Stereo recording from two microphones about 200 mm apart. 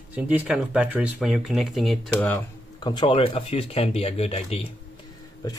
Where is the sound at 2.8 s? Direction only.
25° left (ahead or behind).